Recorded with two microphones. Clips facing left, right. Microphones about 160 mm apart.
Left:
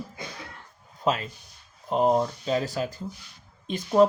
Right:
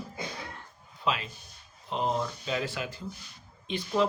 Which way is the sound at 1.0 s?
45° left (ahead or behind).